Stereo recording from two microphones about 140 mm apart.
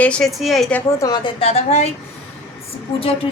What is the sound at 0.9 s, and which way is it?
A woman's voice, 25° left (ahead or behind).